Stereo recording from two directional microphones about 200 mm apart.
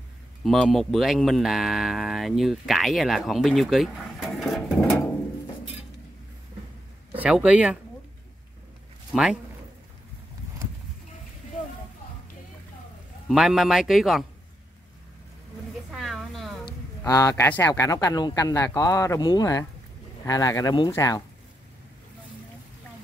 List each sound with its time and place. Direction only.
0.4 s speech: centre (ahead or behind)
7.2 s speech: 5° right (ahead or behind)
9.1 s speech: 5° right (ahead or behind)
13.3 s speech: centre (ahead or behind)
15.9 s a sound: centre (ahead or behind)
16.6 s a man's voice: 15° left (ahead or behind)